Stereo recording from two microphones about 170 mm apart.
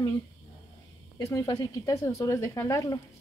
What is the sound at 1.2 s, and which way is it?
Speech, 20° left (ahead or behind).